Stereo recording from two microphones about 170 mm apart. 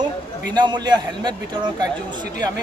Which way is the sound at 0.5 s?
25° right (ahead or behind).